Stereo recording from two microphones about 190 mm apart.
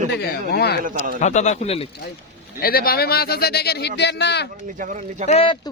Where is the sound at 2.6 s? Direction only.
50° left (ahead or behind).